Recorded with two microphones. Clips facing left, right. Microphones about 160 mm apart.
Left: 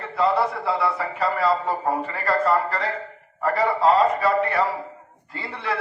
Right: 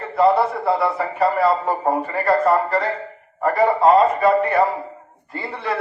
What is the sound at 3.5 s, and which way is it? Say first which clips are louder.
Speech: right 4 dB; 50° right (ahead or behind).